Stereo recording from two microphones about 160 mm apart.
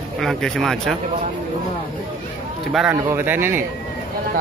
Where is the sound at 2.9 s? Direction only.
15° right (ahead or behind).